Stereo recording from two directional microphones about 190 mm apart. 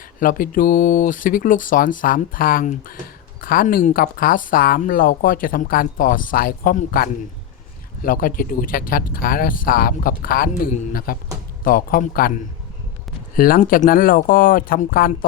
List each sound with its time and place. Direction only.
0.2 s speech: 45° left (ahead or behind)
13.3 s speech: 50° left (ahead or behind)